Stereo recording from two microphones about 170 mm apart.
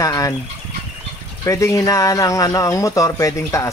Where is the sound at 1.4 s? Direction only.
20° left (ahead or behind).